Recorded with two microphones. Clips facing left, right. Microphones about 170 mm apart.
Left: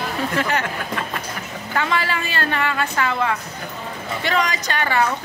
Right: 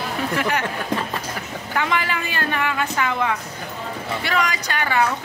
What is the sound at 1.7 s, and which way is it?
A woman's voice, 10° right (ahead or behind).